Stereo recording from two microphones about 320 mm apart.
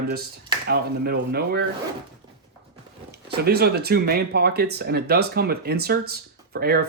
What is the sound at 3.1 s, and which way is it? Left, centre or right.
Speech, right.